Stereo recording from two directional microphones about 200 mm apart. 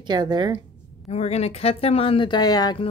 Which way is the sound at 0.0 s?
20° right (ahead or behind).